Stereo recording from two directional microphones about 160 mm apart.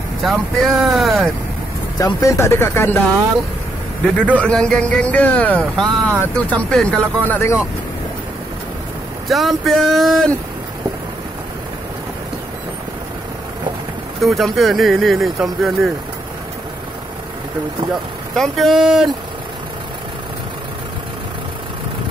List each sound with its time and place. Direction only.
0.2 s speech: centre (ahead or behind)
2.0 s speech: 20° left (ahead or behind)
4.4 s speech: 5° left (ahead or behind)
9.3 s speech: centre (ahead or behind)
14.2 s speech: centre (ahead or behind)
18.3 s speech: centre (ahead or behind)